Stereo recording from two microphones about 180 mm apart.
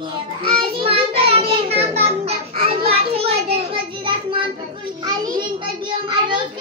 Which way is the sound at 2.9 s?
35° right (ahead or behind).